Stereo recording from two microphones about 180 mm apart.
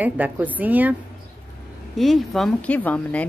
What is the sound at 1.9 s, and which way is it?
Speech, centre (ahead or behind).